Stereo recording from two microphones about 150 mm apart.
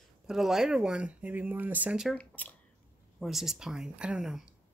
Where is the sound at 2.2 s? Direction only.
10° left (ahead or behind).